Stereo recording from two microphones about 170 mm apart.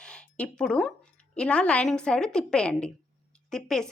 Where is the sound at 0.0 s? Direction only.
5° left (ahead or behind).